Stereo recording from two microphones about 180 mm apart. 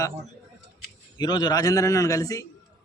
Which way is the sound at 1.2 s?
25° left (ahead or behind).